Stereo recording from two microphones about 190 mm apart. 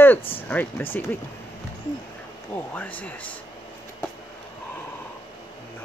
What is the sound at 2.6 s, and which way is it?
Speech, 10° left (ahead or behind).